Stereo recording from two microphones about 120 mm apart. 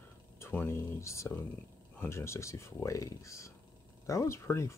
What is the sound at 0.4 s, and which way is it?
Speech, 20° left (ahead or behind).